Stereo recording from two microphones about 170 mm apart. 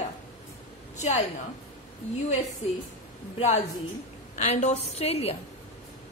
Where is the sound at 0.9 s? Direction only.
40° left (ahead or behind).